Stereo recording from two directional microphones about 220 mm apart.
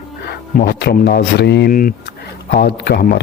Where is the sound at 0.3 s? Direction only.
45° left (ahead or behind).